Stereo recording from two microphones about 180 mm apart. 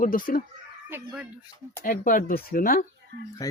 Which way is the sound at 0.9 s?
10° right (ahead or behind).